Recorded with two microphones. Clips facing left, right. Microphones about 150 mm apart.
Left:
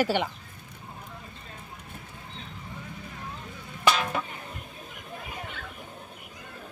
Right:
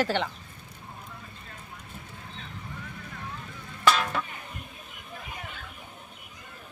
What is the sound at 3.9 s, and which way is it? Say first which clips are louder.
Music: right 1 dB; 10° left (ahead or behind).